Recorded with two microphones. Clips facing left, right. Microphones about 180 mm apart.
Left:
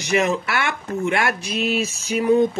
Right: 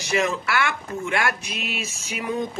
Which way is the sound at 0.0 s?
20° left (ahead or behind).